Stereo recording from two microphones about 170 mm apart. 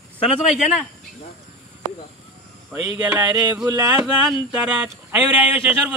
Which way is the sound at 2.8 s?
10° right (ahead or behind).